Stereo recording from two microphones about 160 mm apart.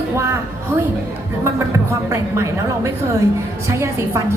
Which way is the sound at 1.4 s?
20° right (ahead or behind).